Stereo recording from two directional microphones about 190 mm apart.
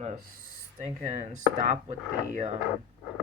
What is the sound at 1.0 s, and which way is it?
Speech, 40° right (ahead or behind).